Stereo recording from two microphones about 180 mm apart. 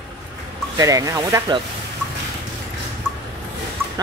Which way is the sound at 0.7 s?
20° right (ahead or behind).